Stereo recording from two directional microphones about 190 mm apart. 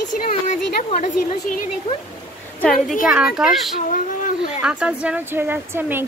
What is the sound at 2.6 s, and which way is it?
Speech, centre (ahead or behind).